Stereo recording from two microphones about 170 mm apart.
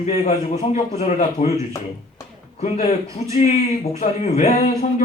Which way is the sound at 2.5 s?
40° left (ahead or behind).